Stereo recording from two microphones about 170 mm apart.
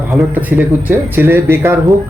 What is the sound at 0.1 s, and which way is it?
Speech, 10° right (ahead or behind).